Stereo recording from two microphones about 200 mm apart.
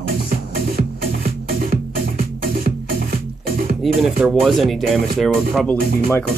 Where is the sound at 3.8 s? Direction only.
Centre (ahead or behind).